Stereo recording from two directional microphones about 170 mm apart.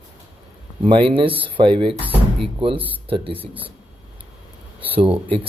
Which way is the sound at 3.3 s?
10° right (ahead or behind).